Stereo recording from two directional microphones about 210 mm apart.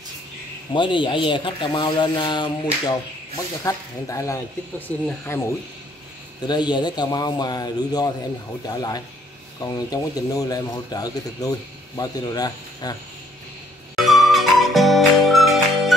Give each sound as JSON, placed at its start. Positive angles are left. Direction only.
{"t": 0.7, "sound": "speech", "side_deg": 25}
{"t": 13.9, "sound": "music", "side_deg": 0}